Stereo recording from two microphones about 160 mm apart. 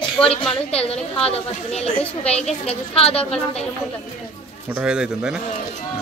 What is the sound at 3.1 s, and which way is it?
Speech, 5° left (ahead or behind).